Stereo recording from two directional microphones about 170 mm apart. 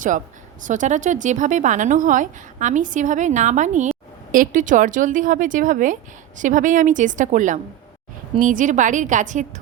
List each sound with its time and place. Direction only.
0.6 s speech: 50° right (ahead or behind)